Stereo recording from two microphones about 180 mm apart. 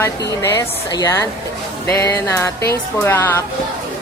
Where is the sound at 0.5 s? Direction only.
20° left (ahead or behind).